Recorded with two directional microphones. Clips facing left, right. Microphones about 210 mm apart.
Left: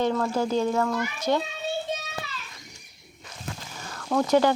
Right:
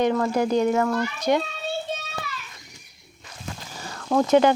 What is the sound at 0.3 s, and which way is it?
Speech, 15° right (ahead or behind).